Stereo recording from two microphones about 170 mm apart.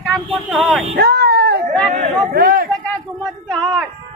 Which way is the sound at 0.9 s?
65° right (ahead or behind).